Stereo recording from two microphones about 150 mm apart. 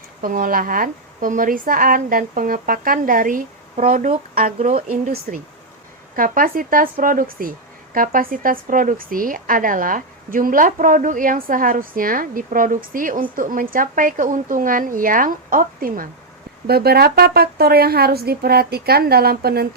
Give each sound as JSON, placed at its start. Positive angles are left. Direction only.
{"t": 0.2, "sound": "a woman's voice", "side_deg": -70}
{"t": 16.6, "sound": "speech", "side_deg": -90}